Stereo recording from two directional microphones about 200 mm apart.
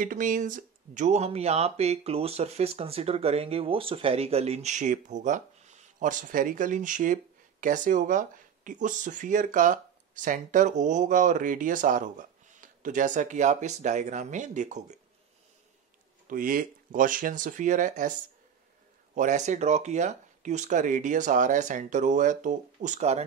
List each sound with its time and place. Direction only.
0.0 s speech: 40° right (ahead or behind)
16.3 s speech: 45° right (ahead or behind)
19.1 s speech: 35° right (ahead or behind)